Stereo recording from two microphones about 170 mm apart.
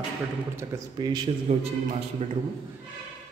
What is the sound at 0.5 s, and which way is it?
Speech, 20° right (ahead or behind).